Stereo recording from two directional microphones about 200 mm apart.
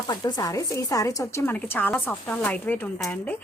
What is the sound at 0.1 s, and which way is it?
Speech, 20° left (ahead or behind).